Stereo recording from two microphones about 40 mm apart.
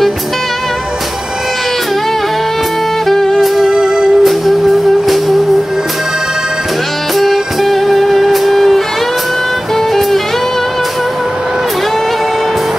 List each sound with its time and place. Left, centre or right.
3.1 s music: centre
3.3 s music: centre
3.7 s music: centre
4.2 s music: centre
7.2 s music: centre